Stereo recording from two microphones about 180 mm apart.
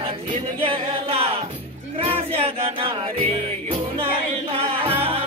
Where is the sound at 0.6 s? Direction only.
30° right (ahead or behind).